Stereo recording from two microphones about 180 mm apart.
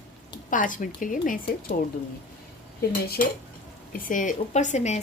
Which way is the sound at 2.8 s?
60° left (ahead or behind).